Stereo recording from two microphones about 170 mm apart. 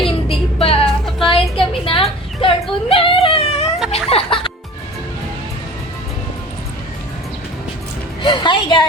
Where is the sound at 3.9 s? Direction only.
35° left (ahead or behind).